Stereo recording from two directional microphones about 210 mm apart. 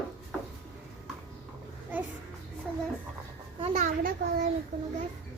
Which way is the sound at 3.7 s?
40° right (ahead or behind).